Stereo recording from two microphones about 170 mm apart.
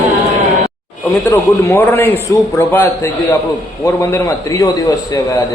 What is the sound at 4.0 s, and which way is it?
A man's voice, 20° left (ahead or behind).